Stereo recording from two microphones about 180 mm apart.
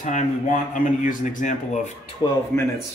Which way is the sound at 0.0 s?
45° left (ahead or behind).